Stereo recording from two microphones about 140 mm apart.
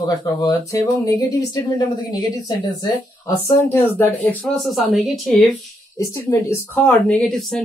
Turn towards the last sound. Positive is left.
turn(degrees=5)  # may be behind; listen again after turning